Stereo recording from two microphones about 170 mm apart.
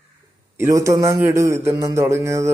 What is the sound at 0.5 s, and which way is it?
A man's voice, 20° right (ahead or behind).